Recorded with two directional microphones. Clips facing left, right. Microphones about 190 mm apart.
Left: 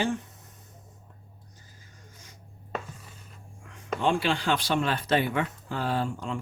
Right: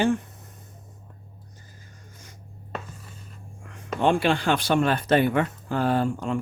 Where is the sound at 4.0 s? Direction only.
55° right (ahead or behind).